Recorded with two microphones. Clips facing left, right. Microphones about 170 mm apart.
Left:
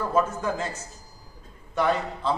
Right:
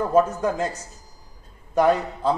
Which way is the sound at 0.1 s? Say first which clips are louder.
Right 5 dB; 40° right (ahead or behind).